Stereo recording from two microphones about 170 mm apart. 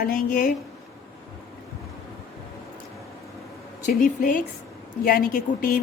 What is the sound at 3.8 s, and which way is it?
Speech, 50° left (ahead or behind).